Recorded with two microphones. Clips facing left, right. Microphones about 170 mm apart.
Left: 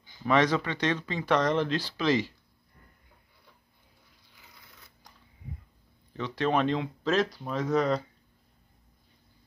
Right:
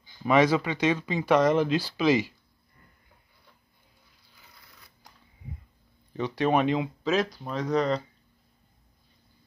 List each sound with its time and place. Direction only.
0.2 s speech: 10° right (ahead or behind)
6.1 s speech: 15° right (ahead or behind); by 8.0 s centre (ahead or behind)